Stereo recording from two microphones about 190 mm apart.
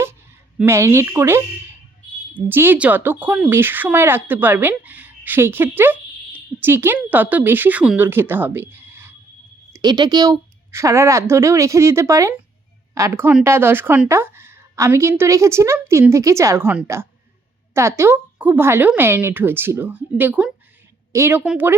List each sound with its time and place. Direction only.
0.6 s speech: 15° right (ahead or behind)